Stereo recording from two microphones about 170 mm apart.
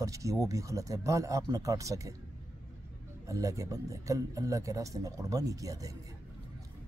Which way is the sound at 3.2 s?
20° right (ahead or behind).